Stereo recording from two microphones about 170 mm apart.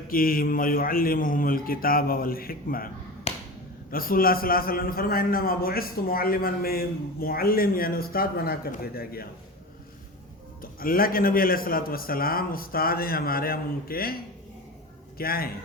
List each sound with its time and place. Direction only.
0.1 s a man's voice: 55° left (ahead or behind)
3.3 s finger snapping: 40° left (ahead or behind)
3.9 s a man's voice: 60° left (ahead or behind)
10.6 s a man's voice: 55° left (ahead or behind)
15.2 s a man's voice: 60° left (ahead or behind)